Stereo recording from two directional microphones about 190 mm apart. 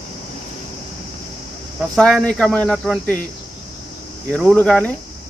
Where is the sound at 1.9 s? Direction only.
5° left (ahead or behind).